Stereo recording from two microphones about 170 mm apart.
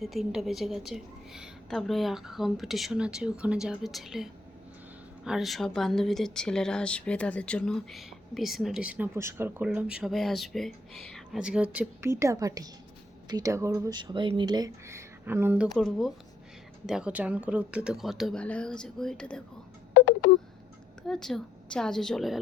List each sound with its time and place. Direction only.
0.0 s speech: centre (ahead or behind)
19.9 s telephone dialing: 70° left (ahead or behind)
21.1 s speech: 5° left (ahead or behind)